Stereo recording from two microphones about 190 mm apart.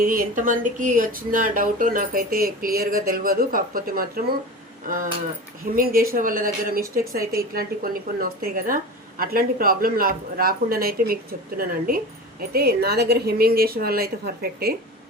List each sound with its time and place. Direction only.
0.0 s speech: 45° right (ahead or behind)
5.7 s a woman's voice: 50° right (ahead or behind)